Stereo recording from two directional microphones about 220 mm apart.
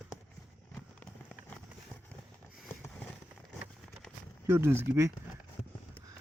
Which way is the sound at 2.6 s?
5° left (ahead or behind).